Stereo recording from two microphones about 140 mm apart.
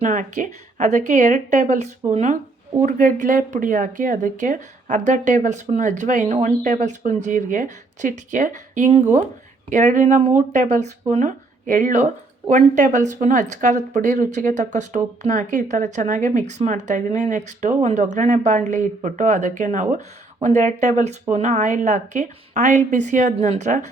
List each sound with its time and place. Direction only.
0.0 s speech: 65° right (ahead or behind)
11.1 s speech: 65° right (ahead or behind)